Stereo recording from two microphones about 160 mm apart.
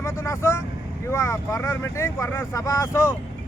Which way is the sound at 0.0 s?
15° left (ahead or behind).